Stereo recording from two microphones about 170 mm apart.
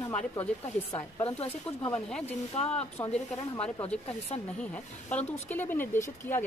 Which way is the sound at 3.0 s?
15° left (ahead or behind).